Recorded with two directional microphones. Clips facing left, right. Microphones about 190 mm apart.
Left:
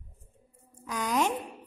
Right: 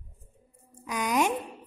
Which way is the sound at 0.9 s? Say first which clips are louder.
Right 2 dB; 15° right (ahead or behind).